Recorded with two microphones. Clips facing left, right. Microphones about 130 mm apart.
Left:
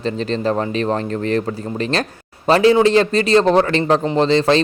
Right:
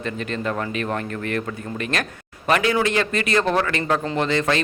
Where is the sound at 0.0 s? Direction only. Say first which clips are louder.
Left 6 dB; 30° left (ahead or behind).